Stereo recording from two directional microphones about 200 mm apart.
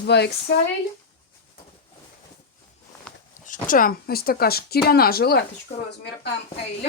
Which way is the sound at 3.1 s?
5° left (ahead or behind).